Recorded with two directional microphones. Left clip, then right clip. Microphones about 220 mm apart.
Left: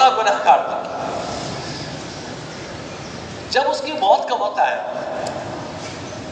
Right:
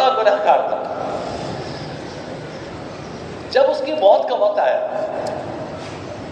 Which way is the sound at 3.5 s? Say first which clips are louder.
Right 3 dB; 35° left (ahead or behind).